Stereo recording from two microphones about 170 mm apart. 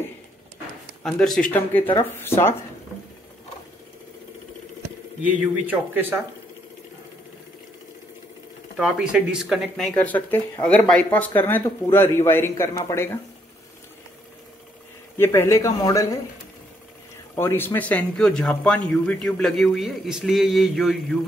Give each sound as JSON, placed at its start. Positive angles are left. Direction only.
{"t": 1.0, "sound": "speech", "side_deg": 0}
{"t": 5.2, "sound": "speech", "side_deg": -10}
{"t": 8.7, "sound": "speech", "side_deg": -5}
{"t": 15.1, "sound": "speech", "side_deg": 15}
{"t": 17.4, "sound": "speech", "side_deg": 15}